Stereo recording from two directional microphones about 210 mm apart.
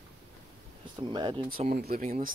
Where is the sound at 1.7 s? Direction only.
45° right (ahead or behind).